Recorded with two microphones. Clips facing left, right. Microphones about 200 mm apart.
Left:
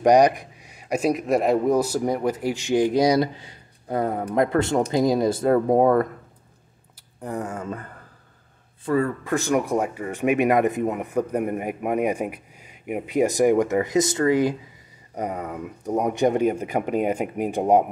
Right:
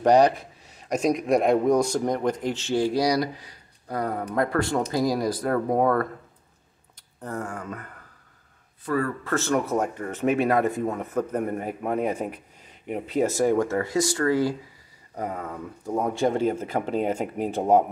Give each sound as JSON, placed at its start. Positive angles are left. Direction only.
{"t": 0.0, "sound": "speech", "side_deg": 15}
{"t": 7.2, "sound": "speech", "side_deg": 15}